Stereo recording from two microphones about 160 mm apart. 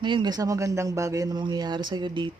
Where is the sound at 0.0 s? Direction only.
30° right (ahead or behind).